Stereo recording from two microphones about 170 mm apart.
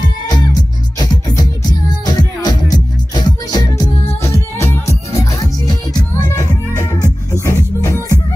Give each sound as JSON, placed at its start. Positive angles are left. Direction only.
{"t": 0.3, "sound": "music", "side_deg": 20}